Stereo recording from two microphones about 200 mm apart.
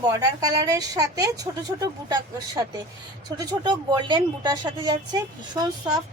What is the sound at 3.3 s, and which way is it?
Speech, 20° right (ahead or behind).